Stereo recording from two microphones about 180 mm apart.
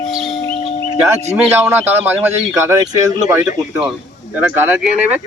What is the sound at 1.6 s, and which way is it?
Speech, 10° right (ahead or behind).